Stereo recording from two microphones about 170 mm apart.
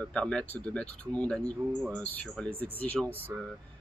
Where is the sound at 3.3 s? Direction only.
15° right (ahead or behind).